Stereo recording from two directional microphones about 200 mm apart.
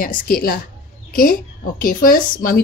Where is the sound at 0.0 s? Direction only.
45° left (ahead or behind).